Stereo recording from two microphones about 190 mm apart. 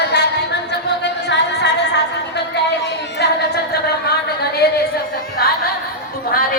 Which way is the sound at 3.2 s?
60° left (ahead or behind).